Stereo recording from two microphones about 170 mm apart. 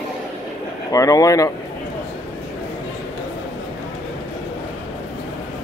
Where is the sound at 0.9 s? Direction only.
20° left (ahead or behind).